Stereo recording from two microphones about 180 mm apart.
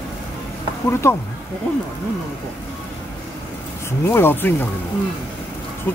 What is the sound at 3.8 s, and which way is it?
Speech, 15° left (ahead or behind).